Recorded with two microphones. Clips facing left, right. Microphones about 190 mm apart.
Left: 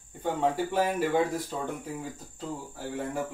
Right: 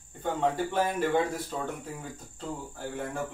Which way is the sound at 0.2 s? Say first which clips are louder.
Left 1 dB; 10° left (ahead or behind).